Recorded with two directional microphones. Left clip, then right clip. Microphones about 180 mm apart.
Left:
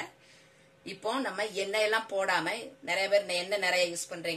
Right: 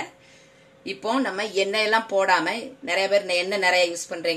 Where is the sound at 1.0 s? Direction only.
45° right (ahead or behind).